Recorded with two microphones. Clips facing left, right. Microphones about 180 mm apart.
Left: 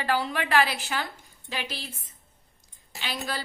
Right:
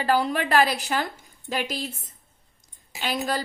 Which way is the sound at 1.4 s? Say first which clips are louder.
Right 7 dB; 45° right (ahead or behind).